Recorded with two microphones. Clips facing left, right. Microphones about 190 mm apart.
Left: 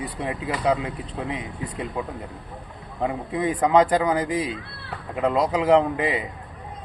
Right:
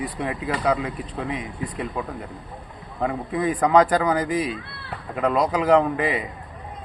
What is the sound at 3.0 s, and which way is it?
A man's voice, 20° left (ahead or behind).